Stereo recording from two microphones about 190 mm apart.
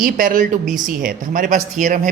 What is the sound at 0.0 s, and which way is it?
Speech, 45° right (ahead or behind).